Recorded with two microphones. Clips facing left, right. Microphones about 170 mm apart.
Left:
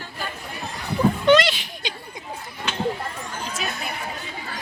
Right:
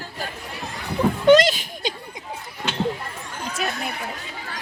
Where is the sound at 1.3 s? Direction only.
45° right (ahead or behind).